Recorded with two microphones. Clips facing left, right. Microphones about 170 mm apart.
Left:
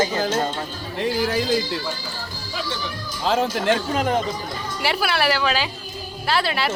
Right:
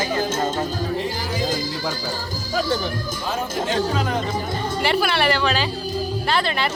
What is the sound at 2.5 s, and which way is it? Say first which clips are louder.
Speech: right 7 dB; 45° right (ahead or behind).